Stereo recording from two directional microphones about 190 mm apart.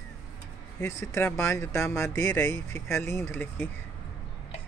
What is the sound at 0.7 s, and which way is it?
Speech, 15° left (ahead or behind).